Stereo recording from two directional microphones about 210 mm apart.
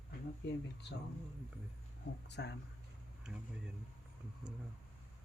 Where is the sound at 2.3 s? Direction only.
55° left (ahead or behind).